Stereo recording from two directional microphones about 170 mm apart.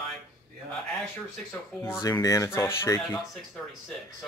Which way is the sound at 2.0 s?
20° left (ahead or behind).